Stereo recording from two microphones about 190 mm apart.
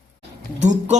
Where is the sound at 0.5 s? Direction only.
40° right (ahead or behind).